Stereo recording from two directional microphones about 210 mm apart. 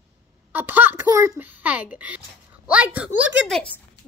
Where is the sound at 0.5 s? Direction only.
10° right (ahead or behind).